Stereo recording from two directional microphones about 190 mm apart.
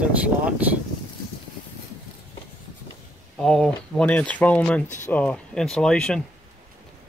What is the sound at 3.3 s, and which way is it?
Speech, centre (ahead or behind).